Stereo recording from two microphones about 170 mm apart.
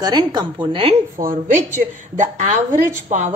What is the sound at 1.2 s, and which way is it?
Speech, 50° right (ahead or behind).